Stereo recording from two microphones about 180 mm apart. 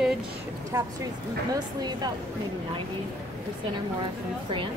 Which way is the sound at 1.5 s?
20° right (ahead or behind).